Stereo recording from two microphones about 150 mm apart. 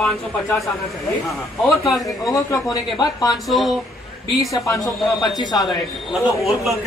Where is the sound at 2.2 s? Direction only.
25° left (ahead or behind).